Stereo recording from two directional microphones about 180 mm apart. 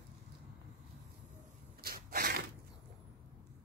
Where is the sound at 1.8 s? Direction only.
55° right (ahead or behind).